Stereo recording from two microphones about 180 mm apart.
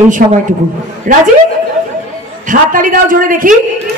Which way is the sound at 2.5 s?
50° right (ahead or behind).